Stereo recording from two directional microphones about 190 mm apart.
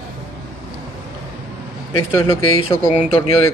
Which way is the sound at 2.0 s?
15° left (ahead or behind).